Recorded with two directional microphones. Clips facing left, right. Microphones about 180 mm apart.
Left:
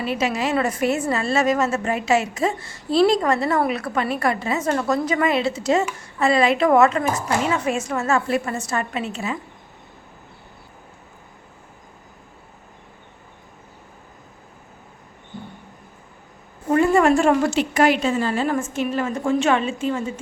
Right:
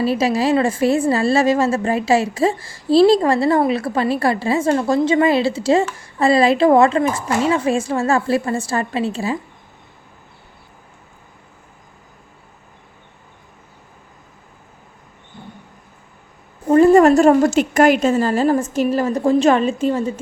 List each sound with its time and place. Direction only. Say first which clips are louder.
0.0 s a woman's voice: right 6 dB; 35° right (ahead or behind)
16.6 s a woman's voice: right 6 dB; 35° right (ahead or behind)